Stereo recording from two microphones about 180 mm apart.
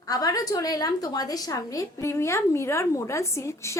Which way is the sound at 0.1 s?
20° left (ahead or behind).